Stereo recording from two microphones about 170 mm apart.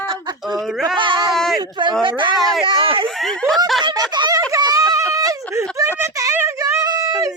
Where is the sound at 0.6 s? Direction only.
Centre (ahead or behind).